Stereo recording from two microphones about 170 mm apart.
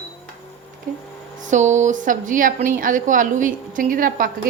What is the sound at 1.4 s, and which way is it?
A woman's voice, 45° right (ahead or behind).